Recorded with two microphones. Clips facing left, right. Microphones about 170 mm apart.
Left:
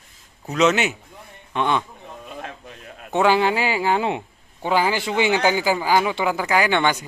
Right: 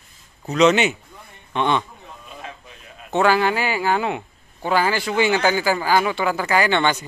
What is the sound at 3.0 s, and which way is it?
Speech, 15° left (ahead or behind).